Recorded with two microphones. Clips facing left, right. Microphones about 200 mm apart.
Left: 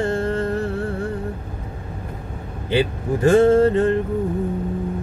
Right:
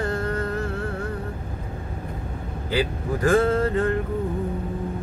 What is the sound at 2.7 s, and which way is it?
Music, 25° left (ahead or behind).